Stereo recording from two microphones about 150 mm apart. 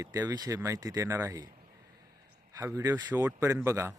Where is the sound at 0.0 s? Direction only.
25° right (ahead or behind).